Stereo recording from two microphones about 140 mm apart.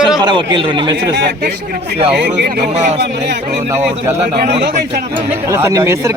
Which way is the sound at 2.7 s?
50° right (ahead or behind).